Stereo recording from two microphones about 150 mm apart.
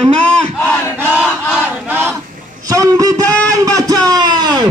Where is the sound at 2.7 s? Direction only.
25° right (ahead or behind).